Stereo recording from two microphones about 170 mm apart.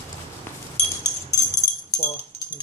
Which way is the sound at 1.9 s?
25° left (ahead or behind).